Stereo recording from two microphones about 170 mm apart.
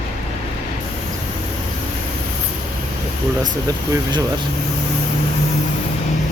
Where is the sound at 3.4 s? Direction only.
20° right (ahead or behind).